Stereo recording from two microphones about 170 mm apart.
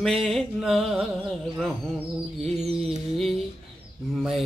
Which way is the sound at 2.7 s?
35° right (ahead or behind).